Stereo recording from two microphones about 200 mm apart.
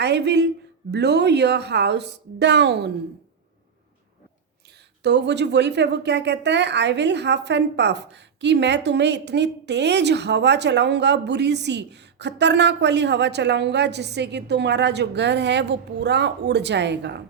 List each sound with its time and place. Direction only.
0.0 s a woman's voice: 55° right (ahead or behind)
5.0 s a woman's voice: 60° right (ahead or behind)